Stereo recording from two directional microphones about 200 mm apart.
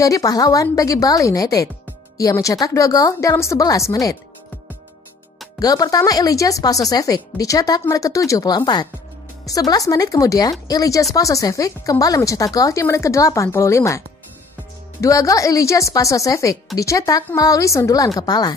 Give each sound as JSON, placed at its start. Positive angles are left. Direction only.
{"t": 0.0, "sound": "speech", "side_deg": 15}
{"t": 5.6, "sound": "speech", "side_deg": 20}